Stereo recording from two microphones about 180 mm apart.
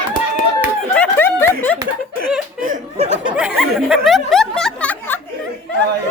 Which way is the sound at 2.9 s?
35° right (ahead or behind).